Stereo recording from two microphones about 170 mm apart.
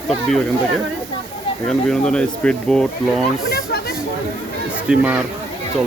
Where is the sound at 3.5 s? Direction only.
65° left (ahead or behind).